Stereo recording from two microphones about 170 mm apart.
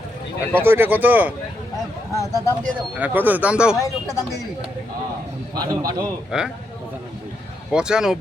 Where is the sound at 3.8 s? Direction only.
20° left (ahead or behind).